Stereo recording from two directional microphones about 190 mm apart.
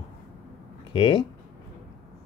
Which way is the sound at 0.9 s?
25° left (ahead or behind).